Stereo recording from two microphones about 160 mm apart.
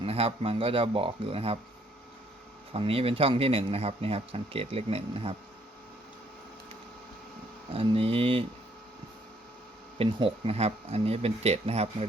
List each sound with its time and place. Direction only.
0.0 s speech: 40° right (ahead or behind)
2.7 s speech: 35° right (ahead or behind)
7.7 s speech: 35° right (ahead or behind)
10.0 s speech: 35° right (ahead or behind)